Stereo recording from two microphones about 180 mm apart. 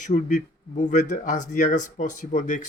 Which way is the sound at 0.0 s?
45° left (ahead or behind).